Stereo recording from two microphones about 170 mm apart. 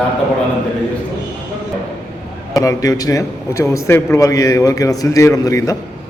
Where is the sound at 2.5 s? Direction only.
20° left (ahead or behind).